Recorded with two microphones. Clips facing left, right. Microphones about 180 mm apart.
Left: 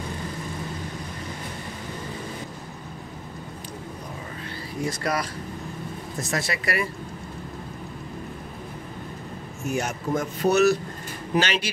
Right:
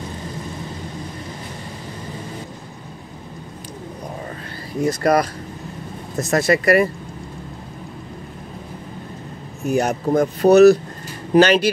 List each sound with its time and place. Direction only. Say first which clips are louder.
4.8 s speech: right 10 dB; 50° right (ahead or behind)
6.3 s speech: right 12 dB; 50° right (ahead or behind)
9.6 s speech: right 8 dB; 35° right (ahead or behind)